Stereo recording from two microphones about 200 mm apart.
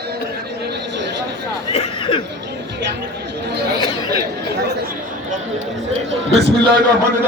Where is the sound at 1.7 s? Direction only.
25° left (ahead or behind).